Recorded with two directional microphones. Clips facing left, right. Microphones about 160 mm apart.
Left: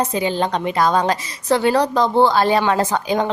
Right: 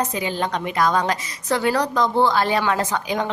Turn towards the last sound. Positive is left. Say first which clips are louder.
# left 4 dB
turn(degrees=30)  # may be behind; listen again after turning